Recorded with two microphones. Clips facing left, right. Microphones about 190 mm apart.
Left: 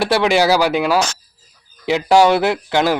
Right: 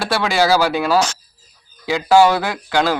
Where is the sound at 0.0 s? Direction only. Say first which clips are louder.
Left 3 dB; 20° left (ahead or behind).